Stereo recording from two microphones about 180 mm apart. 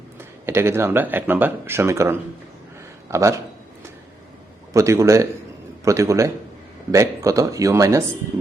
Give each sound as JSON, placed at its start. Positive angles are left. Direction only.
{"t": 0.2, "sound": "speech", "side_deg": -15}
{"t": 4.7, "sound": "speech", "side_deg": -15}